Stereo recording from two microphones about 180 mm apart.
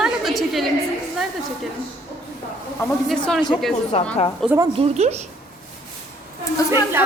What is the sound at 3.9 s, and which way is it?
Speech, 35° left (ahead or behind).